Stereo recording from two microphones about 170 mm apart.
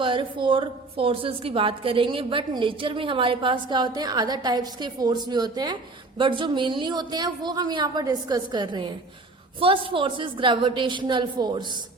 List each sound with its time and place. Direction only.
0.0 s a woman's voice: 30° right (ahead or behind)